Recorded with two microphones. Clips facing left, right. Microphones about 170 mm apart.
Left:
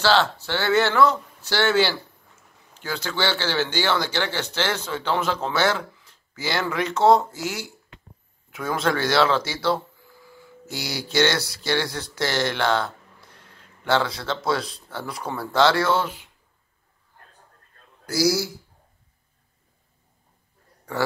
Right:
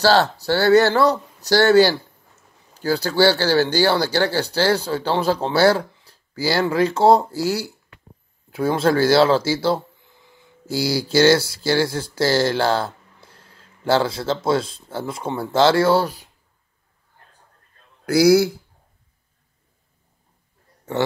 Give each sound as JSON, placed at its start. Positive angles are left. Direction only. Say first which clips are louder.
{"t": 0.0, "sound": "speech", "louder": "right 4 dB", "side_deg": -40}
{"t": 18.0, "sound": "speech", "louder": "right 8 dB", "side_deg": -60}